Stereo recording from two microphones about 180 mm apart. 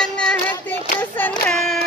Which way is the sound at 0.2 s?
5° left (ahead or behind).